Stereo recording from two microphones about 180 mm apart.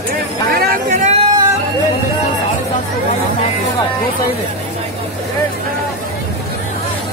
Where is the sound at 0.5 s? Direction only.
50° right (ahead or behind).